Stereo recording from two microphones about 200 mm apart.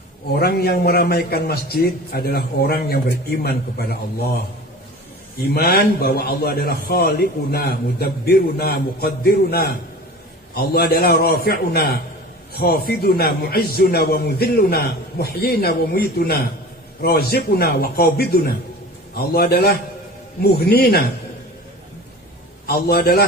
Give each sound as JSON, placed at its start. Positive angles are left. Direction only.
{"t": 0.3, "sound": "a man's voice", "side_deg": 50}
{"t": 5.5, "sound": "a man's voice", "side_deg": 50}
{"t": 22.7, "sound": "a man's voice", "side_deg": 50}